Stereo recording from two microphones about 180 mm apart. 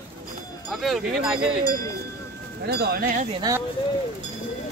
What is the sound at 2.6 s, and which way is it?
Speech, 60° right (ahead or behind).